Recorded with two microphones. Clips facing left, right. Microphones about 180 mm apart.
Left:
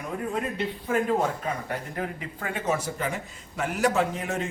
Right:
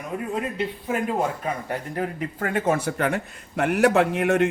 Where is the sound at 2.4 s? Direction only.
55° right (ahead or behind).